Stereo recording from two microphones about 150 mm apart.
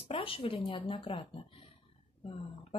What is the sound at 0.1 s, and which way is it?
Speech, 40° left (ahead or behind).